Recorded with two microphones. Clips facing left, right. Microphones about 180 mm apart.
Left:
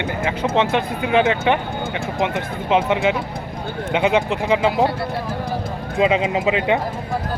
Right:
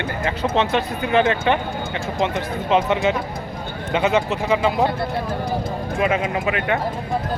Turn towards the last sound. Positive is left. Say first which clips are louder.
# left 3 dB
turn(degrees=20)  # may be behind; listen again after turning